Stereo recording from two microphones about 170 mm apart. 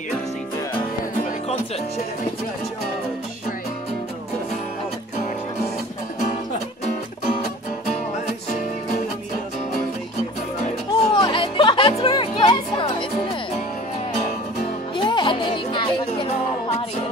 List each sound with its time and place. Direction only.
10.9 s music: 25° left (ahead or behind)
15.0 s music: 30° left (ahead or behind)